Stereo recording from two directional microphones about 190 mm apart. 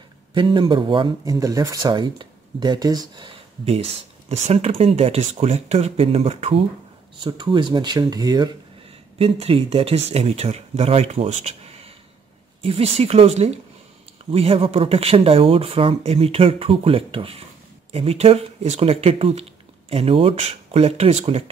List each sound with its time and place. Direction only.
0.3 s speech: 25° right (ahead or behind)